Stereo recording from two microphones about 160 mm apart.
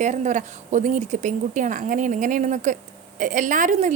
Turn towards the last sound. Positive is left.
turn(degrees=-50)  # may be behind; listen again after turning